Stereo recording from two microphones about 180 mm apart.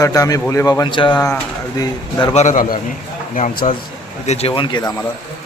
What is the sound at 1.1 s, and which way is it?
Speech, 15° left (ahead or behind).